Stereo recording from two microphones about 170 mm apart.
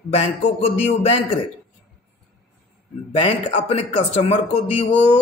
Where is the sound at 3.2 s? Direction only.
35° left (ahead or behind).